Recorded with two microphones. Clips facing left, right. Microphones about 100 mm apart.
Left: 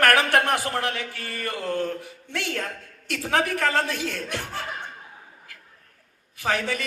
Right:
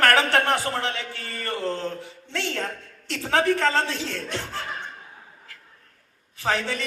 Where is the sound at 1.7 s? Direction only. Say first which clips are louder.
Left 5 dB; 25° right (ahead or behind).